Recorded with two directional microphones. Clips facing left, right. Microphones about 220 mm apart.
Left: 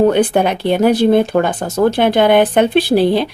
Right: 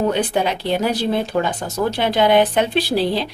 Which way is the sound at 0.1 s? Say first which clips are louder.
Left 6 dB; 55° left (ahead or behind).